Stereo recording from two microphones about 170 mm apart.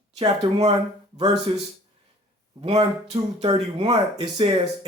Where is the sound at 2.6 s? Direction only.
35° right (ahead or behind).